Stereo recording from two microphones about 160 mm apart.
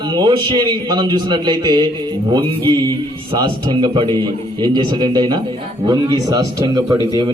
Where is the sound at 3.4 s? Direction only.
25° right (ahead or behind).